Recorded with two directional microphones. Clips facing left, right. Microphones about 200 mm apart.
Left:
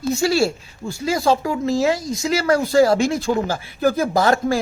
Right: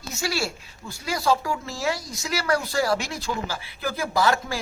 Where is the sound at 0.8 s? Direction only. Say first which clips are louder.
Left 5 dB; 25° left (ahead or behind).